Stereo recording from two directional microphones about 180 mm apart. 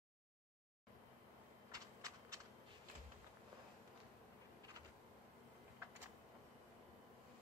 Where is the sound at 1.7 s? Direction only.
20° right (ahead or behind).